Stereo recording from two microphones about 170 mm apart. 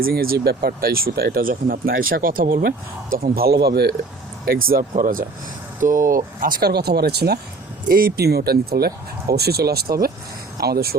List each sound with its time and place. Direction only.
0.0 s speech: 60° right (ahead or behind)
4.4 s speech: 60° right (ahead or behind)